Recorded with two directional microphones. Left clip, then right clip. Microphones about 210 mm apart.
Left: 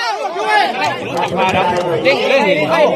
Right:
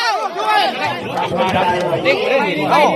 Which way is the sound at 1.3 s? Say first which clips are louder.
Left 1 dB; 50° left (ahead or behind).